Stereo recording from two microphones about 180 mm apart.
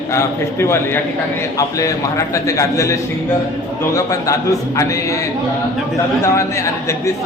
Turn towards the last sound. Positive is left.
turn(degrees=15)  # may be behind; listen again after turning